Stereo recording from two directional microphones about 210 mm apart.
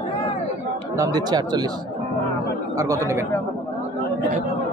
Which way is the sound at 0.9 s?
15° right (ahead or behind).